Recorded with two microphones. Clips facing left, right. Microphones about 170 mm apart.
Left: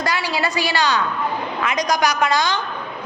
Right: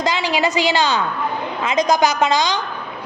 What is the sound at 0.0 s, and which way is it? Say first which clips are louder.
A woman's voice: right 3 dB; 20° right (ahead or behind).